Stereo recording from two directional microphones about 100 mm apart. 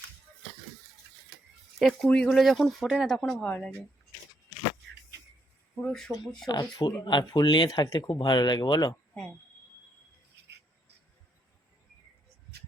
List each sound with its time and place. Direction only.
1.8 s speech: centre (ahead or behind)
5.9 s speech: 5° left (ahead or behind)
6.5 s speech: 45° left (ahead or behind)